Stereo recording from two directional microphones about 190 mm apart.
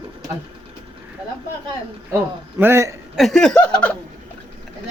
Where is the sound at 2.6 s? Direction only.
15° right (ahead or behind).